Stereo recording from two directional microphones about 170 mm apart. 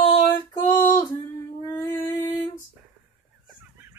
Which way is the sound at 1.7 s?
25° left (ahead or behind).